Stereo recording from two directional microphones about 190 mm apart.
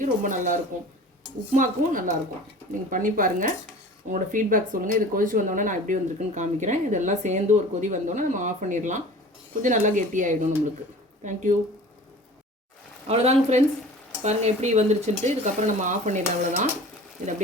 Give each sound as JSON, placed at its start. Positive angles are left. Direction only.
{"t": 0.0, "sound": "speech", "side_deg": -45}
{"t": 13.1, "sound": "speech", "side_deg": -35}